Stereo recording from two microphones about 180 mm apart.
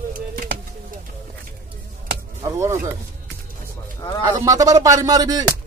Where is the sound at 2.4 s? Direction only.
15° right (ahead or behind).